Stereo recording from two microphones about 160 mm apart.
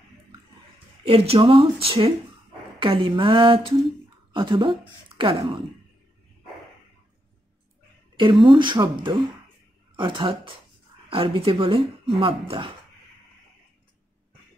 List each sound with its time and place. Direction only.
1.0 s speech: 40° right (ahead or behind)
8.2 s speech: 30° right (ahead or behind)
9.9 s speech: 30° right (ahead or behind)